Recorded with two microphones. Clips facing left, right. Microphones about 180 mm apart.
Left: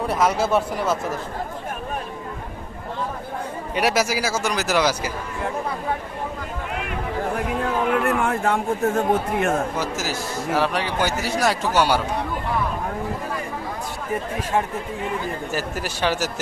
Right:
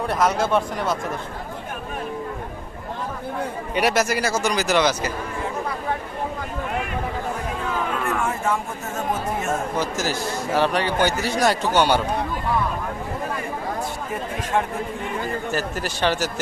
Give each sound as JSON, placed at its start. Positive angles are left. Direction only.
{"t": 0.1, "sound": "a man's voice", "side_deg": 5}
{"t": 3.8, "sound": "a man's voice", "side_deg": 5}
{"t": 8.0, "sound": "speech", "side_deg": 60}
{"t": 9.7, "sound": "a man's voice", "side_deg": 5}
{"t": 15.5, "sound": "speech", "side_deg": 5}